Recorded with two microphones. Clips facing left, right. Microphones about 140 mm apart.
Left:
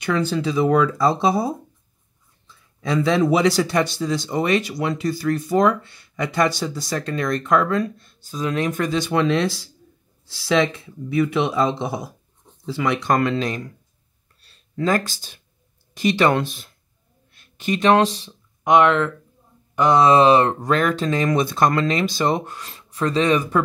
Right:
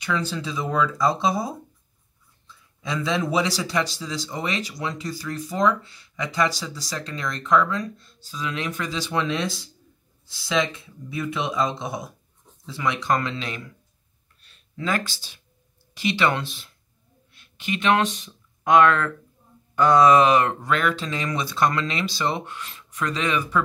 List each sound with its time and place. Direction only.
0.0 s speech: 60° left (ahead or behind)
2.8 s speech: 60° left (ahead or behind); by 13.7 s 45° left (ahead or behind)
14.4 s a sound: 40° left (ahead or behind)
15.9 s speech: 45° left (ahead or behind)
18.6 s speech: 20° left (ahead or behind); by 23.6 s 40° left (ahead or behind)